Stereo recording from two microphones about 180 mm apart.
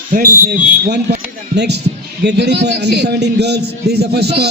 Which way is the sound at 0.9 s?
65° right (ahead or behind).